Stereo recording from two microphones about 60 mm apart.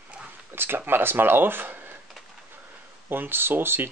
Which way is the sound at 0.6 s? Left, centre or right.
Right.